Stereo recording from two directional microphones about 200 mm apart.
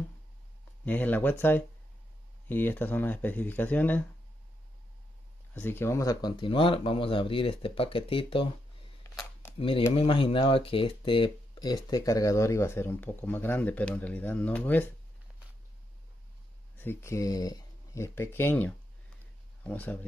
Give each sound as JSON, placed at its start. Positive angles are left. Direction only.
{"t": 0.8, "sound": "speech", "side_deg": 10}
{"t": 5.5, "sound": "speech", "side_deg": 10}
{"t": 9.6, "sound": "speech", "side_deg": 25}
{"t": 16.8, "sound": "speech", "side_deg": 15}